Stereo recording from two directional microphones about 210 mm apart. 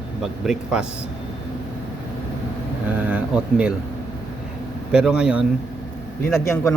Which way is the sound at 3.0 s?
5° right (ahead or behind).